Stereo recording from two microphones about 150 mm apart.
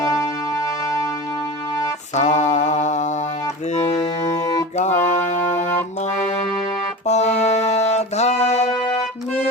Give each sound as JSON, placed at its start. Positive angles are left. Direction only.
{"t": 0.0, "sound": "music", "side_deg": 25}
{"t": 2.1, "sound": "music", "side_deg": 50}
{"t": 4.3, "sound": "music", "side_deg": 25}
{"t": 4.8, "sound": "music", "side_deg": 50}
{"t": 7.1, "sound": "music", "side_deg": 50}
{"t": 8.7, "sound": "music", "side_deg": 30}